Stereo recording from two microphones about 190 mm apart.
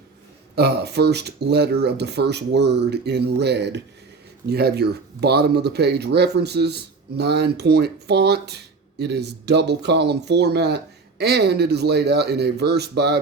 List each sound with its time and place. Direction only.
0.5 s speech: 60° right (ahead or behind)